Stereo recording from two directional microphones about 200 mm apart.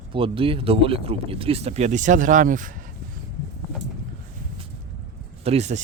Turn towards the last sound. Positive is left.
turn(degrees=-35)  # may be behind; listen again after turning